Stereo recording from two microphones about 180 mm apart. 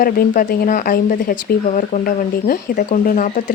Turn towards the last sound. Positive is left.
turn(degrees=45)  # may be behind; listen again after turning